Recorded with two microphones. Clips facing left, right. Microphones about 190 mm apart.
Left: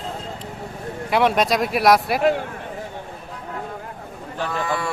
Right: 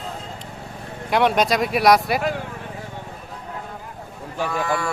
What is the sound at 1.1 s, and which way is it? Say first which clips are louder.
Speech: even; centre (ahead or behind).